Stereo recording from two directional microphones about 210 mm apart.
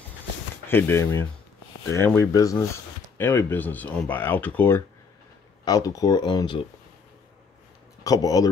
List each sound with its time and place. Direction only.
0.7 s speech: 10° left (ahead or behind)
8.0 s speech: 15° left (ahead or behind)